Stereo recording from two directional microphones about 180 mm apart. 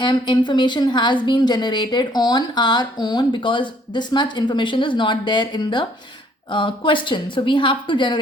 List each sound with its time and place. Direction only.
0.0 s a woman's voice: 25° left (ahead or behind)